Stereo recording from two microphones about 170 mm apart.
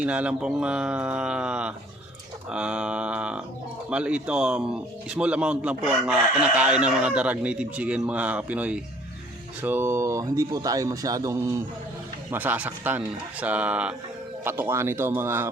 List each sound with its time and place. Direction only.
0.0 s speech: 5° right (ahead or behind)